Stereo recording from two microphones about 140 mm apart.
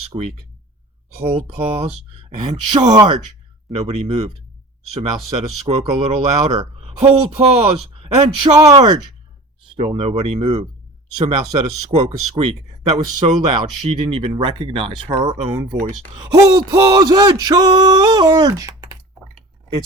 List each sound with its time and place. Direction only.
0.1 s speech: 35° right (ahead or behind)
2.7 s a sound: 30° right (ahead or behind)
3.8 s speech: 45° right (ahead or behind)
5.6 s speech: 45° right (ahead or behind)
9.7 s speech: 35° right (ahead or behind)
11.5 s speech: 35° right (ahead or behind)
13.5 s speech: 35° right (ahead or behind)
15.5 s a sound: 20° right (ahead or behind)
18.3 s speech: 25° right (ahead or behind)